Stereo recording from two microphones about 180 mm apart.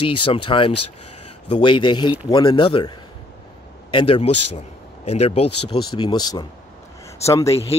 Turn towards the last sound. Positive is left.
turn(degrees=15)  # may be behind; listen again after turning